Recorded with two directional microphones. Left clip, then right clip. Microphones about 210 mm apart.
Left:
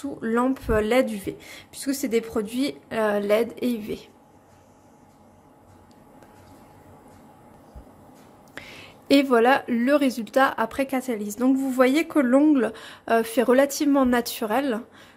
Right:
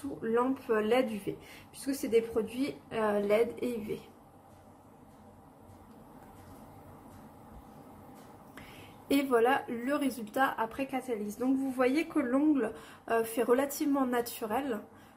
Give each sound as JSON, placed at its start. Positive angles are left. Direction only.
{"t": 0.2, "sound": "speech", "side_deg": 45}
{"t": 8.5, "sound": "speech", "side_deg": 45}